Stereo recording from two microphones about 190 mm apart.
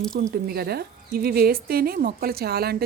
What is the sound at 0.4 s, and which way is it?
A woman's voice, 55° right (ahead or behind).